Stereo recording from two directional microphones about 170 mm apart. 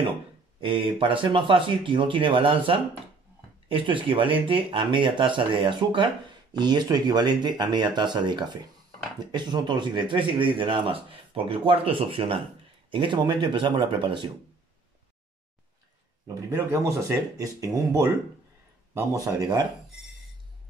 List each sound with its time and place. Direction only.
0.6 s speech: 30° right (ahead or behind)
16.3 s speech: 20° right (ahead or behind)